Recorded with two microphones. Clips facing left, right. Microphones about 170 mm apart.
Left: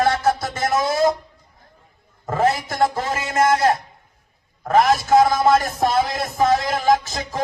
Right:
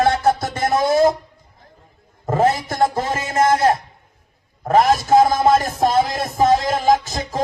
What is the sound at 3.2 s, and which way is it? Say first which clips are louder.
Speech: right 1 dB; 30° right (ahead or behind).